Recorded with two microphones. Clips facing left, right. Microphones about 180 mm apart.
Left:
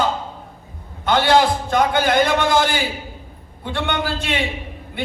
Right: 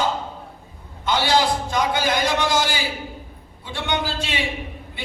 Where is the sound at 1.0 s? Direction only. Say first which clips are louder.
Left 4 dB; 55° left (ahead or behind).